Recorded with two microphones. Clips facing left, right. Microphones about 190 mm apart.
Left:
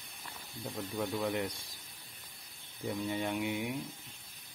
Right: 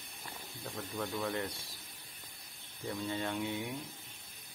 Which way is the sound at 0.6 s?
15° left (ahead or behind).